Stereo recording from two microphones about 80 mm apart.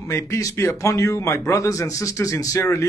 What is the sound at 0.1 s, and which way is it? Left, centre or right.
A man's voice, left.